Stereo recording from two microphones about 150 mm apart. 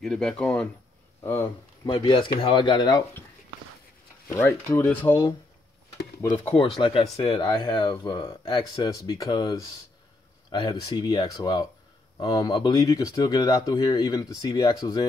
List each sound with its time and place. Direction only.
0.0 s speech: 5° left (ahead or behind)
1.9 s speech: 35° left (ahead or behind)
4.3 s speech: 20° left (ahead or behind)
6.4 s speech: 35° left (ahead or behind)
10.7 s speech: 25° left (ahead or behind)